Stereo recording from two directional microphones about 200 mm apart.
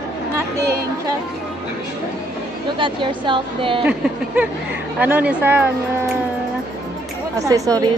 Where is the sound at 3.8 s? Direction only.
5° right (ahead or behind).